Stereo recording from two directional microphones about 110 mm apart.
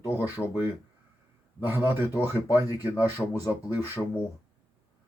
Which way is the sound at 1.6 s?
20° right (ahead or behind).